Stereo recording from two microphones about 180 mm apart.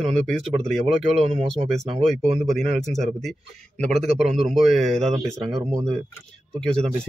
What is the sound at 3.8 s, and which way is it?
Speech, centre (ahead or behind).